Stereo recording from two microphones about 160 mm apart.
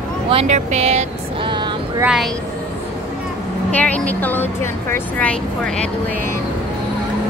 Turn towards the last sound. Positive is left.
turn(degrees=10)  # may be behind; listen again after turning